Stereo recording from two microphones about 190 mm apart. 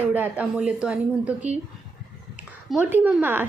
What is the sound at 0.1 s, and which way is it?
A woman's voice, 10° right (ahead or behind).